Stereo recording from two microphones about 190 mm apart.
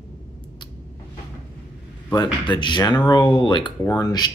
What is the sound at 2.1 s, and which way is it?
Speech, 25° left (ahead or behind).